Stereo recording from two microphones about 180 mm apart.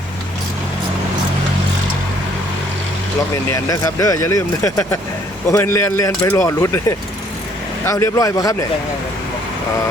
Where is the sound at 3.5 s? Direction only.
20° left (ahead or behind).